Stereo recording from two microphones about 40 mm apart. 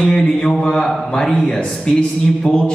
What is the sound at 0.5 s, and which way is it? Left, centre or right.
A man's voice, centre.